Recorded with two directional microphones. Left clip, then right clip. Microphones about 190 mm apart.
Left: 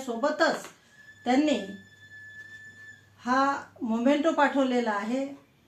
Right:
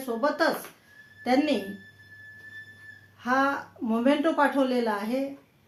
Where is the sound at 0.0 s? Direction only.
15° right (ahead or behind).